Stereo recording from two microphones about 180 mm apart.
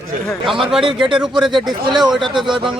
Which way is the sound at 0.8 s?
25° right (ahead or behind).